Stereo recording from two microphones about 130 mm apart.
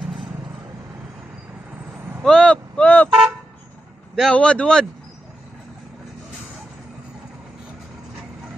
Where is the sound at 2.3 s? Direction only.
5° left (ahead or behind).